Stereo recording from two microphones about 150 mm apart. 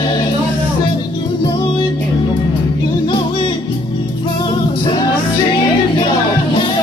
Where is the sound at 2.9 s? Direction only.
35° left (ahead or behind).